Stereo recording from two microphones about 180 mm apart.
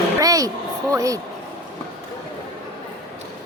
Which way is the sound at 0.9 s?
20° right (ahead or behind).